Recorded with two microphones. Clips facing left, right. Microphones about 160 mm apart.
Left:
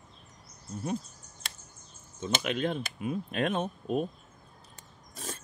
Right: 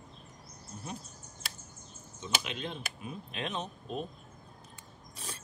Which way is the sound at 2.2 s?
50° left (ahead or behind).